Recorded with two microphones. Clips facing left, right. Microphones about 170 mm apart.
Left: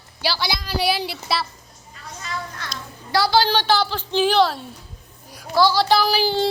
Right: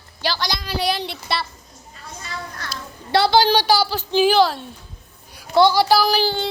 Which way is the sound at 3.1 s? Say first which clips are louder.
Right 3 dB; 25° right (ahead or behind).